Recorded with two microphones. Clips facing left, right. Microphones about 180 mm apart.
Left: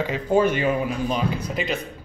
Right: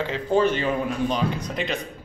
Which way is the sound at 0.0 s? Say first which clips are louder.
Left 1 dB; 10° left (ahead or behind).